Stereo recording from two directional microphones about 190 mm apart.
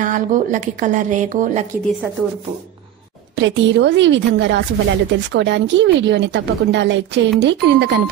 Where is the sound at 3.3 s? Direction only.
70° right (ahead or behind).